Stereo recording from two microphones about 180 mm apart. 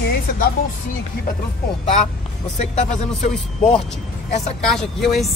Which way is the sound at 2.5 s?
40° left (ahead or behind).